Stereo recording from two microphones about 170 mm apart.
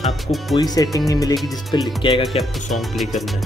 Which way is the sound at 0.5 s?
20° left (ahead or behind).